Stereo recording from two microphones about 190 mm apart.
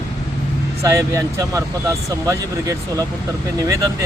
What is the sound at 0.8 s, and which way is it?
Speech, 15° right (ahead or behind).